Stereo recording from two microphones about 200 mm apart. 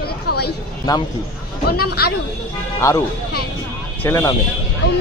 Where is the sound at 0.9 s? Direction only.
20° left (ahead or behind).